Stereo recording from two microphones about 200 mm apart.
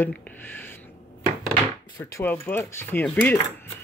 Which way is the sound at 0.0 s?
10° left (ahead or behind).